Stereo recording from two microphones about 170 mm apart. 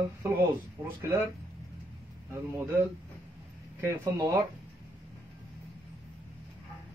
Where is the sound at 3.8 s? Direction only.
20° right (ahead or behind).